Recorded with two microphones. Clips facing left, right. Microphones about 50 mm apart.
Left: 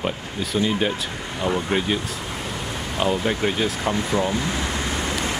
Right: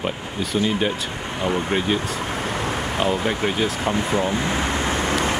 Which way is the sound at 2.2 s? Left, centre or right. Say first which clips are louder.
Right 5 dB; right.